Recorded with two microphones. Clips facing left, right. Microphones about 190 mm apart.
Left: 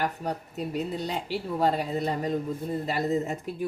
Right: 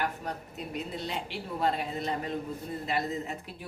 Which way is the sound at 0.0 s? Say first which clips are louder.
Left 4 dB; 35° left (ahead or behind).